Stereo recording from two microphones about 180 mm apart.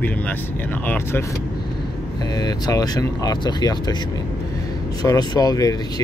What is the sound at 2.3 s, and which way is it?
Speech, 20° left (ahead or behind).